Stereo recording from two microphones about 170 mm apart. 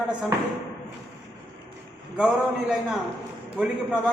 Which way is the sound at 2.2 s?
5° right (ahead or behind).